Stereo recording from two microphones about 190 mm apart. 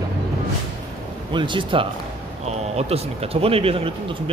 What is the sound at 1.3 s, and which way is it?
Speech, 25° right (ahead or behind).